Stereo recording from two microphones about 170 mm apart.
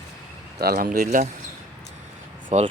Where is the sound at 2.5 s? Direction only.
40° right (ahead or behind).